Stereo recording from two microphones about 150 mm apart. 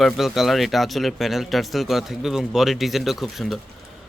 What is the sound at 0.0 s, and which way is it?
A man's voice, centre (ahead or behind).